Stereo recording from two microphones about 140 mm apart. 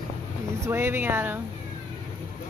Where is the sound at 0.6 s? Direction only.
15° right (ahead or behind).